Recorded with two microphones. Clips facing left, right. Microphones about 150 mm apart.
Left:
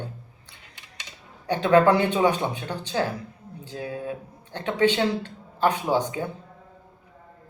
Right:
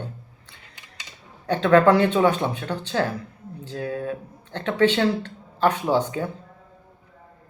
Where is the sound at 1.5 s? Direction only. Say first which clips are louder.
Right 2 dB; 15° left (ahead or behind).